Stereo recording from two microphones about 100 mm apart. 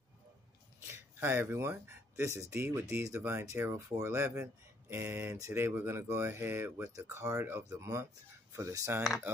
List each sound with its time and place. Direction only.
0.9 s speech: 25° right (ahead or behind)